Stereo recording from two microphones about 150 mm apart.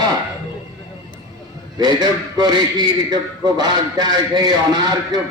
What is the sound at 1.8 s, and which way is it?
A man's voice, 25° right (ahead or behind).